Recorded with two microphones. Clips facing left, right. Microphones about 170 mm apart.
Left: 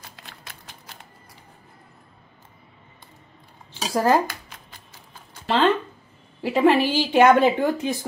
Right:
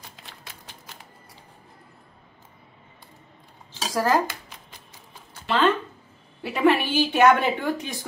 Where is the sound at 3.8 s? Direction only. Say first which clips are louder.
Left 3 dB; 20° left (ahead or behind).